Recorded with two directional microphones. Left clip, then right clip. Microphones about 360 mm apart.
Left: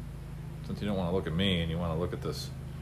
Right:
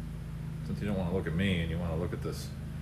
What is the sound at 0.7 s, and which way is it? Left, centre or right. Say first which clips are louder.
Speech: left 2 dB; centre.